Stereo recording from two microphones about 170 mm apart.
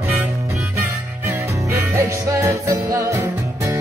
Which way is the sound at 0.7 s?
15° right (ahead or behind).